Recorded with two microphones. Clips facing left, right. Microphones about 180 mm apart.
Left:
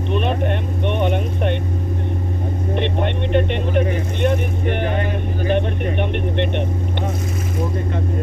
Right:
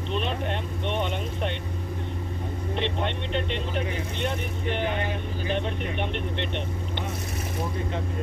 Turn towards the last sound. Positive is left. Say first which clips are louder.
# left 9 dB
turn(degrees=55)  # may be behind; listen again after turning